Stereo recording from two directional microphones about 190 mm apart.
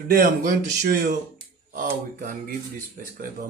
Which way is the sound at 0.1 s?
55° right (ahead or behind).